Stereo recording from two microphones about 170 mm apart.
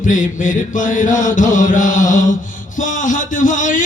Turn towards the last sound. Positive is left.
turn(degrees=50)  # may be behind; listen again after turning